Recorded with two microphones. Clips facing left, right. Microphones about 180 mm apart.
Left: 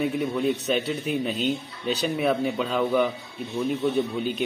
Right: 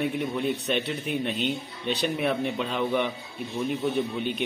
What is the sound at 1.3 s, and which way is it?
Speech, 40° left (ahead or behind).